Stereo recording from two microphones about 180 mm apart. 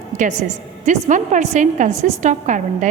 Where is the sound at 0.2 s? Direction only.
45° right (ahead or behind).